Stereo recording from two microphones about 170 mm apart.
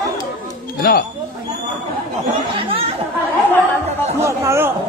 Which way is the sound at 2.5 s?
35° right (ahead or behind).